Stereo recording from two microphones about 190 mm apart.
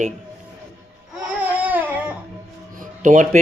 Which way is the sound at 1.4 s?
10° right (ahead or behind).